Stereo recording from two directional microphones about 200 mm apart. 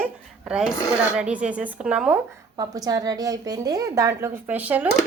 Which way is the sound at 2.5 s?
20° right (ahead or behind).